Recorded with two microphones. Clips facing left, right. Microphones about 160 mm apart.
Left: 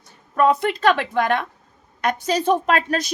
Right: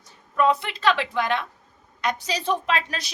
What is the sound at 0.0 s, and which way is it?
A woman's voice, 50° left (ahead or behind).